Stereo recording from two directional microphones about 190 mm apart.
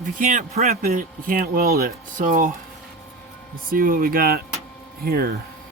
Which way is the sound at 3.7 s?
50° right (ahead or behind).